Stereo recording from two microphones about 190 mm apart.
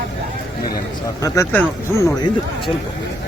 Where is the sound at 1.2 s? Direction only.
15° left (ahead or behind).